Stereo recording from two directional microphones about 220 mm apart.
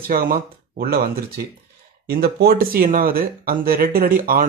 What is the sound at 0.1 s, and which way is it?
Speech, 40° right (ahead or behind).